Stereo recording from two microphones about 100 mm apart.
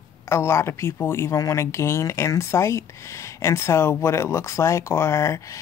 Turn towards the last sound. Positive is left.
turn(degrees=30)  # may be behind; listen again after turning